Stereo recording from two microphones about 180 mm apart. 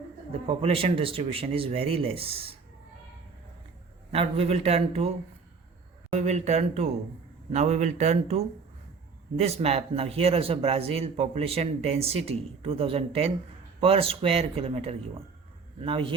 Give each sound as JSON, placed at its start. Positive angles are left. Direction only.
{"t": 0.4, "sound": "speech", "side_deg": -35}
{"t": 4.1, "sound": "speech", "side_deg": -35}